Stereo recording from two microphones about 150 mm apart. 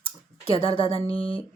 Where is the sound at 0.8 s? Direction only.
40° left (ahead or behind).